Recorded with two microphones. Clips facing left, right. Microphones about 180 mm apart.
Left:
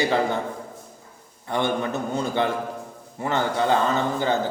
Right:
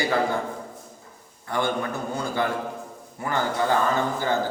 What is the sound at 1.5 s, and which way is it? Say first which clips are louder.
A man's voice: left 2 dB; 20° left (ahead or behind).